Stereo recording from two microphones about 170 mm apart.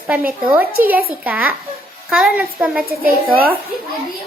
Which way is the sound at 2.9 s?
60° right (ahead or behind).